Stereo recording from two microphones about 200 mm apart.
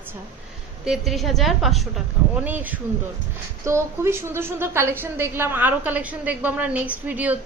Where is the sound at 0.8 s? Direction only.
Centre (ahead or behind).